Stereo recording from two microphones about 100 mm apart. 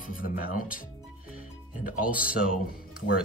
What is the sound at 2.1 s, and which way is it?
Speech, 10° right (ahead or behind).